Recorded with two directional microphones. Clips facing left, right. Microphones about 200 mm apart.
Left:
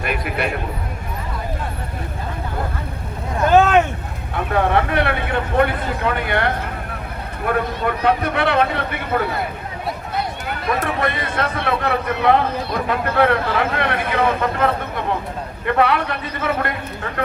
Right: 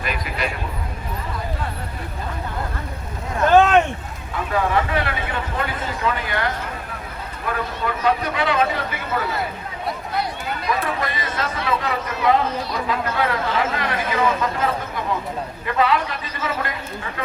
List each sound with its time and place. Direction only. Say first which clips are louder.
0.0 s speech: left 4 dB; 55° left (ahead or behind)
3.5 s vehicle: left 1 dB; 5° left (ahead or behind)
4.4 s speech: left 3 dB; 60° left (ahead or behind)
10.7 s speech: left 4 dB; 55° left (ahead or behind)